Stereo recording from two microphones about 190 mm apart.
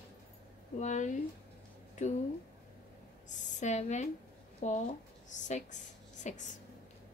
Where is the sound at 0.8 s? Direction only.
40° left (ahead or behind).